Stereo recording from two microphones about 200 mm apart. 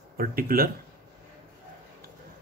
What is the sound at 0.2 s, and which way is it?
Speech, 45° right (ahead or behind).